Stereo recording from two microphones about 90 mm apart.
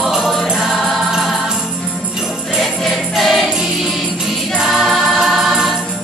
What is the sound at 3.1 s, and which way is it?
Music, 5° right (ahead or behind).